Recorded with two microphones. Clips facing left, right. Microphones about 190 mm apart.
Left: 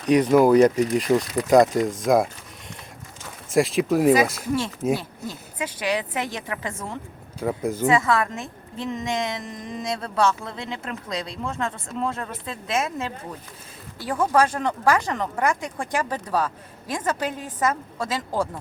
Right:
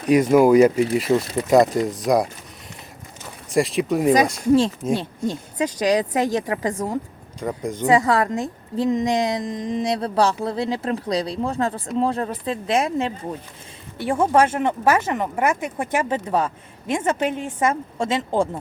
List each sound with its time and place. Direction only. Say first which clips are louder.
0.0 s speech: right 2 dB; 10° right (ahead or behind)
3.5 s speech: even; centre (ahead or behind)
5.5 s a woman's voice: right 6 dB; 40° right (ahead or behind)
7.3 s speech: left 1 dB; 5° left (ahead or behind)
7.9 s a woman's voice: right 4 dB; 35° right (ahead or behind)